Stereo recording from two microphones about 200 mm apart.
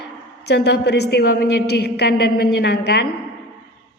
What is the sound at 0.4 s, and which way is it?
A woman's voice, 55° left (ahead or behind).